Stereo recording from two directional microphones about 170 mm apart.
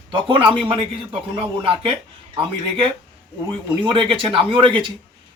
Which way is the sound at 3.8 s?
30° right (ahead or behind).